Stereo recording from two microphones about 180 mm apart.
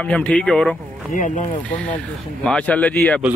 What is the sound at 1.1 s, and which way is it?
Speech, 45° left (ahead or behind).